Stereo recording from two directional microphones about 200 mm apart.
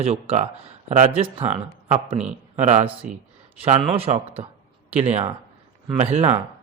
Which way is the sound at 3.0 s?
5° right (ahead or behind).